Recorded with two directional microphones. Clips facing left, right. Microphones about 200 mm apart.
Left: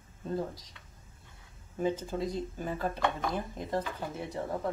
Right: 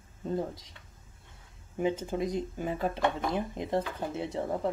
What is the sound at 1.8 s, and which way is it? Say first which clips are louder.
Speech: right 2 dB; 20° right (ahead or behind).